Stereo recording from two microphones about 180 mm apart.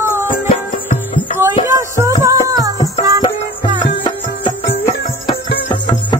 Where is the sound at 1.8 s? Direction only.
15° right (ahead or behind).